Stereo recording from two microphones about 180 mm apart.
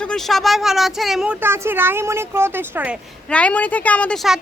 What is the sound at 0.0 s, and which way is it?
Speech, 5° left (ahead or behind).